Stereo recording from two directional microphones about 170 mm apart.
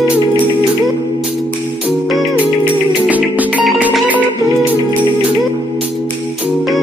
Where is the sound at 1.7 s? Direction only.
5° right (ahead or behind).